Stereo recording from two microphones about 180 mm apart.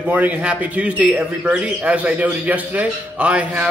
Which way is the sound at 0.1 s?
5° right (ahead or behind).